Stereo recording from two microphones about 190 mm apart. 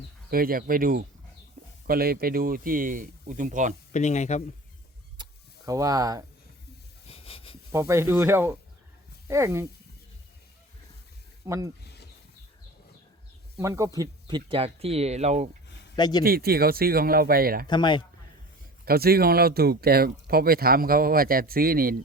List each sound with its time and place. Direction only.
0.3 s speech: 50° right (ahead or behind)
1.6 s chicken: 50° right (ahead or behind)
1.9 s speech: 55° right (ahead or behind)
3.9 s speech: 40° left (ahead or behind)
5.1 s vehicle: 20° right (ahead or behind)
7.1 s a sound: 30° left (ahead or behind)
7.7 s speech: 15° right (ahead or behind)
11.4 s speech: 15° right (ahead or behind)
13.6 s speech: 15° right (ahead or behind); by 15.4 s 35° right (ahead or behind)
16.0 s speech: 20° left (ahead or behind)
16.2 s speech: 55° right (ahead or behind)
17.7 s speech: 25° left (ahead or behind)
18.9 s speech: 55° right (ahead or behind)